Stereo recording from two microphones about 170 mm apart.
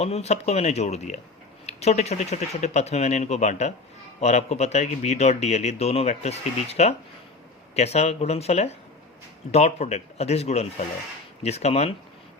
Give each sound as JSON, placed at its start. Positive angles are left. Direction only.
{"t": 0.0, "sound": "a man's voice", "side_deg": 40}